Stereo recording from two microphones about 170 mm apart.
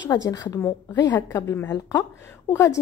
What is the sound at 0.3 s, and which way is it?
A woman's voice, 20° left (ahead or behind).